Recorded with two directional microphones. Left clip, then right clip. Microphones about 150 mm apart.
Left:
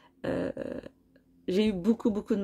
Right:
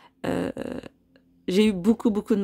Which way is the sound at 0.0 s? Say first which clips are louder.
Right 4 dB; 35° right (ahead or behind).